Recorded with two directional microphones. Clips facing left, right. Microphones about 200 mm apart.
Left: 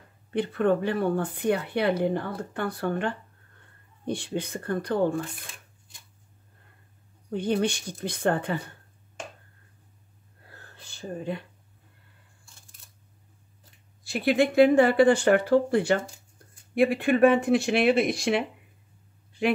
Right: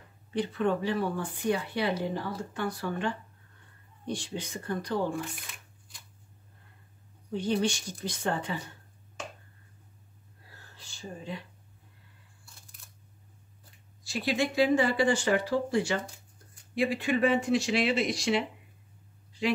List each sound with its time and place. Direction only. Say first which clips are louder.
0.3 s speech: left 4 dB; 55° left (ahead or behind)
5.5 s scissors: left 1 dB; 25° left (ahead or behind)
7.3 s speech: left 3 dB; 55° left (ahead or behind)
10.4 s whispering: left 4 dB; 55° left (ahead or behind)
14.0 s speech: left 6 dB; 55° left (ahead or behind)